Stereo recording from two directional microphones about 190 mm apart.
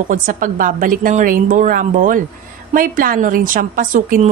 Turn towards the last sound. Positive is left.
turn(degrees=-45)  # may be behind; listen again after turning